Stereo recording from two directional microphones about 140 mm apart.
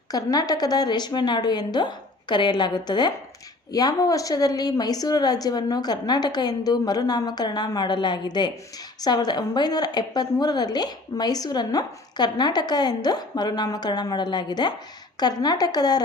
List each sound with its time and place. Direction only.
0.1 s a woman's voice: 25° left (ahead or behind)